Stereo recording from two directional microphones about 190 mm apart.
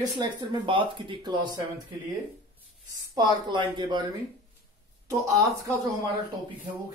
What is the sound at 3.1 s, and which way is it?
Speech, 25° right (ahead or behind).